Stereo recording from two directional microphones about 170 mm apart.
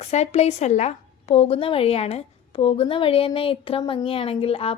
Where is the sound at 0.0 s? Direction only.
40° left (ahead or behind).